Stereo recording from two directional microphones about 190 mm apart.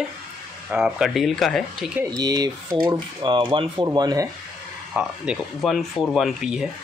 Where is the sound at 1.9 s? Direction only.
20° right (ahead or behind).